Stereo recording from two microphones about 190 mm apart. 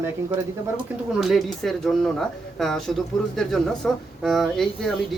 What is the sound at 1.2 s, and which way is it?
Speech, centre (ahead or behind).